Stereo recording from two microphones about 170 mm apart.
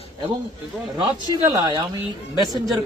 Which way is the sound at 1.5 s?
25° right (ahead or behind).